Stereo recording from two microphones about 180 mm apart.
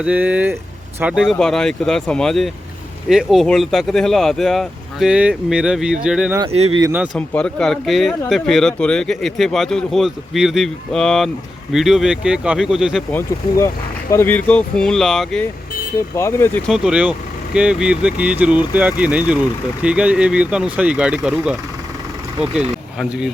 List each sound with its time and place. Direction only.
0.0 s speech: 5° right (ahead or behind)
6.5 s speech: 35° right (ahead or behind)
6.9 s speech: 5° right (ahead or behind)
7.2 s speech: 5° left (ahead or behind)
13.1 s speech: 10° left (ahead or behind)
16.0 s speech: 15° left (ahead or behind)
16.6 s speech: 5° right (ahead or behind)